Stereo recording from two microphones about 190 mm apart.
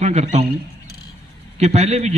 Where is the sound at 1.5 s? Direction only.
35° right (ahead or behind).